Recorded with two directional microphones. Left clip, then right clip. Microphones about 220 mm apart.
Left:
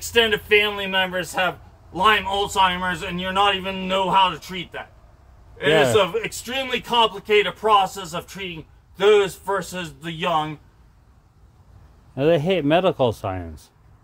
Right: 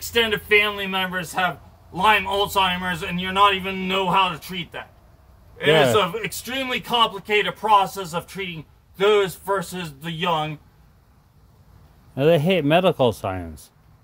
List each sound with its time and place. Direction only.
0.1 s a man's voice: 10° right (ahead or behind)
2.0 s a man's voice: 20° right (ahead or behind)
5.7 s speech: centre (ahead or behind)
5.9 s a man's voice: 15° right (ahead or behind)
12.2 s speech: centre (ahead or behind)